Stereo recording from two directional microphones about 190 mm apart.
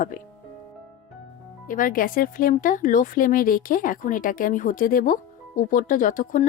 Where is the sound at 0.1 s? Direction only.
45° left (ahead or behind).